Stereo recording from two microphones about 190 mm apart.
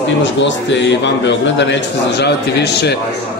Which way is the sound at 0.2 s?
70° left (ahead or behind).